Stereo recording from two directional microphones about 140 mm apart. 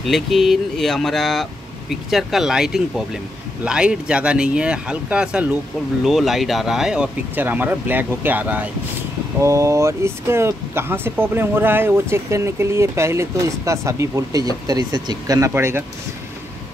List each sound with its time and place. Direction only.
0.0 s speech: centre (ahead or behind)
9.4 s speech: 20° right (ahead or behind)